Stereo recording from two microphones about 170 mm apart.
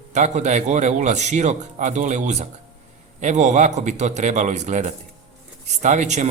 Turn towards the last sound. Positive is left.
turn(degrees=-45)  # may be behind; listen again after turning